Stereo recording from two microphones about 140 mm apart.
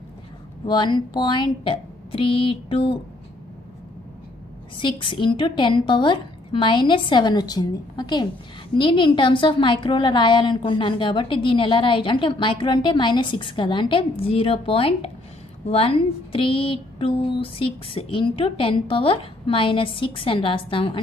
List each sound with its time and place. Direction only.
0.7 s a woman's voice: 35° left (ahead or behind)
4.7 s a woman's voice: 35° left (ahead or behind)